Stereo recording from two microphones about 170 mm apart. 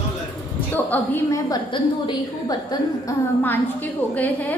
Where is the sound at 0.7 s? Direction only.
10° left (ahead or behind).